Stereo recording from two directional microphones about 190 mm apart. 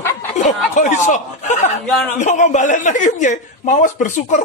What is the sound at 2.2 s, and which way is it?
A man's voice, 40° left (ahead or behind).